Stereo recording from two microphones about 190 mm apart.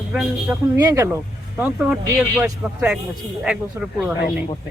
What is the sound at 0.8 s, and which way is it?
Speech, 15° right (ahead or behind).